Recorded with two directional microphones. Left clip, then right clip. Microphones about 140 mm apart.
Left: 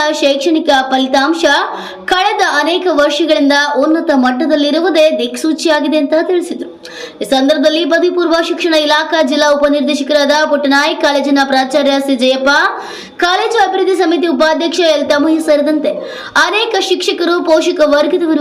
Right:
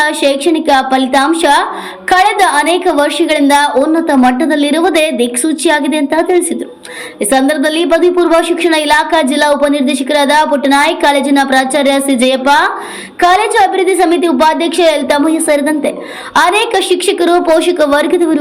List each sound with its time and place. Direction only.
0.0 s a woman's voice: 40° right (ahead or behind)
7.3 s a woman's voice: 50° right (ahead or behind)